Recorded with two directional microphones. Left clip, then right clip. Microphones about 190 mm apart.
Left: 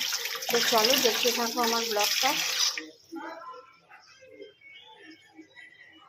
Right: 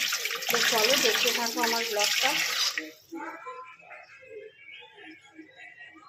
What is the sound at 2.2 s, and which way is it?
Water, centre (ahead or behind).